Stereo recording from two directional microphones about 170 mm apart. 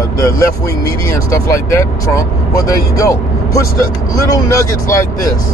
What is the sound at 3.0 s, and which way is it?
Speech, 15° left (ahead or behind).